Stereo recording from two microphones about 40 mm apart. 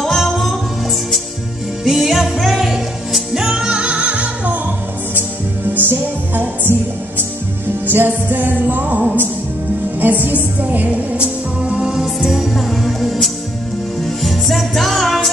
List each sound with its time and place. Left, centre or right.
0.0 s music: centre
1.9 s music: centre
3.4 s music: right
5.8 s music: right
7.8 s music: right
8.1 s music: right
11.6 s music: right
11.9 s music: centre